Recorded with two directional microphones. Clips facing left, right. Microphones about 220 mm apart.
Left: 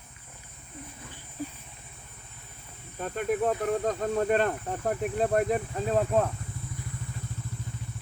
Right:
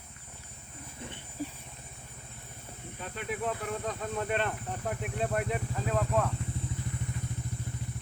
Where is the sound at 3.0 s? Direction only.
45° left (ahead or behind).